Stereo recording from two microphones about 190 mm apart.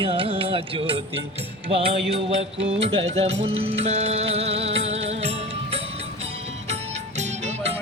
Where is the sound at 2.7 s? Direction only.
30° right (ahead or behind).